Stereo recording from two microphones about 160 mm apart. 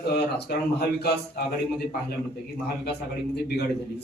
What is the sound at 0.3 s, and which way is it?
Speech, 90° left.